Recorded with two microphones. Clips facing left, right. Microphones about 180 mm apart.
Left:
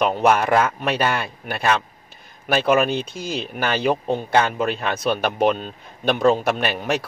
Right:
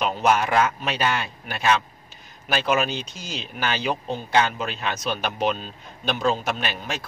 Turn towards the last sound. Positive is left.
turn(degrees=60)  # may be behind; listen again after turning